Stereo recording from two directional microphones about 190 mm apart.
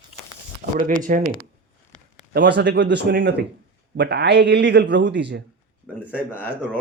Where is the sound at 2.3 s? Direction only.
65° right (ahead or behind).